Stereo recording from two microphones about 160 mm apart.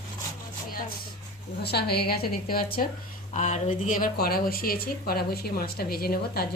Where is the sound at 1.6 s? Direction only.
80° left; by 2.9 s 65° left (ahead or behind).